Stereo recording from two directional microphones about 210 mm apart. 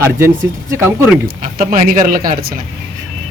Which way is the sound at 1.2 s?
45° right (ahead or behind).